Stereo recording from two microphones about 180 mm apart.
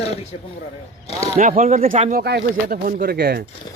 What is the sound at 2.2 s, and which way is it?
Speech, 60° right (ahead or behind).